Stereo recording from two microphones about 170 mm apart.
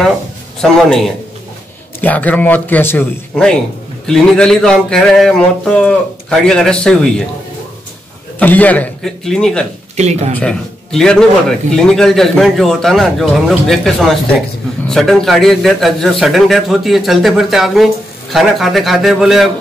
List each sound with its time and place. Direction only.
0.6 s a man's voice: 5° left (ahead or behind)
8.4 s a man's voice: 10° left (ahead or behind)
9.9 s speech: 40° right (ahead or behind)
10.4 s a man's voice: 5° left (ahead or behind)